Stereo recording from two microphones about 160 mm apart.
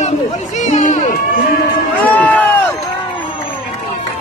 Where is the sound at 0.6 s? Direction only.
50° left (ahead or behind).